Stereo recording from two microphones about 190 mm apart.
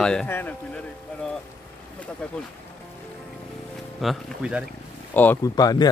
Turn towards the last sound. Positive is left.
turn(degrees=20)  # may be behind; listen again after turning